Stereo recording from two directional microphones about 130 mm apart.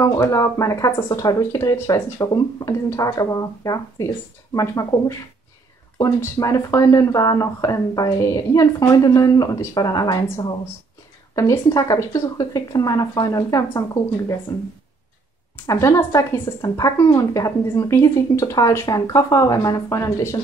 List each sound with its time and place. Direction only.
0.0 s speech: 25° left (ahead or behind)
11.3 s speech: 25° left (ahead or behind)
15.5 s speech: 25° left (ahead or behind)